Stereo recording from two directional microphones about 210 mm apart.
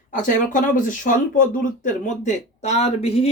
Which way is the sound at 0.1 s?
40° left (ahead or behind).